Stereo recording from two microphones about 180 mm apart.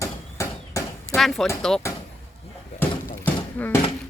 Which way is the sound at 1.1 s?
Centre (ahead or behind).